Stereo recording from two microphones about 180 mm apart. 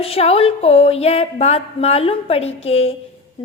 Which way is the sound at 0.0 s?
35° left (ahead or behind).